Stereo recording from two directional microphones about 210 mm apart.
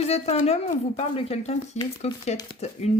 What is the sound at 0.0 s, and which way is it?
Speech, 30° left (ahead or behind).